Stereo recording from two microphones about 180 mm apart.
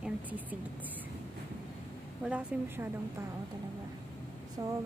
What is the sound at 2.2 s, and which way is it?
Speech, 5° right (ahead or behind).